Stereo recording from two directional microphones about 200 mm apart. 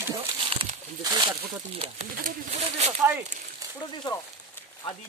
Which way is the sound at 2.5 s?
30° right (ahead or behind).